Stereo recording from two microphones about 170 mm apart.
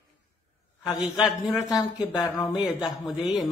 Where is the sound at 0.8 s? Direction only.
25° left (ahead or behind).